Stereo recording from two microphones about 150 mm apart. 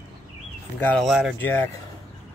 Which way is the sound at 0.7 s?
10° left (ahead or behind).